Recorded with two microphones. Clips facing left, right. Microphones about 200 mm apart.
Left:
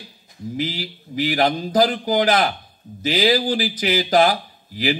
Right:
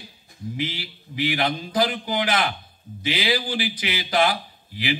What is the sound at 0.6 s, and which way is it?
Speech, 40° left (ahead or behind).